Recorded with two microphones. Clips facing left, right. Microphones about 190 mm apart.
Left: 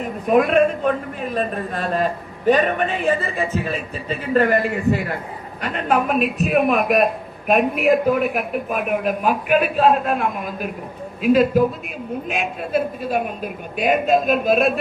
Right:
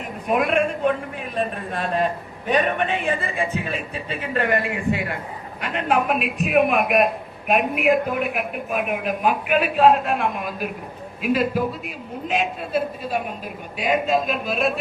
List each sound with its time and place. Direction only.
0.3 s a man's voice: 40° left (ahead or behind)